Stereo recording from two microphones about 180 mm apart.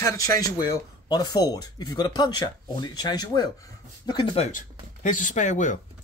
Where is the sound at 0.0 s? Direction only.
15° left (ahead or behind).